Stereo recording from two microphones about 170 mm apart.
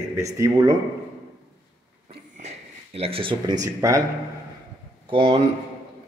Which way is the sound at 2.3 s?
40° right (ahead or behind).